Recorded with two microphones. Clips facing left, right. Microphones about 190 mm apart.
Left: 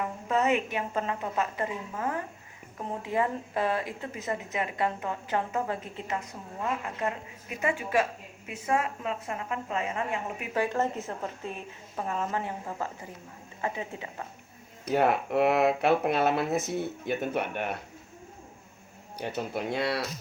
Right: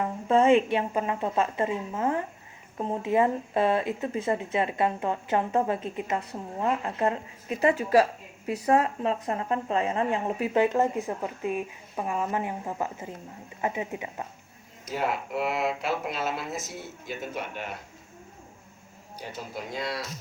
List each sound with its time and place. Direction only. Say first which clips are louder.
0.3 s speech: right 7 dB; 30° right (ahead or behind)
6.1 s a woman's voice: right 4 dB; 30° right (ahead or behind)
10.5 s speech: right 4 dB; 20° right (ahead or behind)
14.8 s speech: left 5 dB; 60° left (ahead or behind)
19.2 s speech: left 5 dB; 65° left (ahead or behind)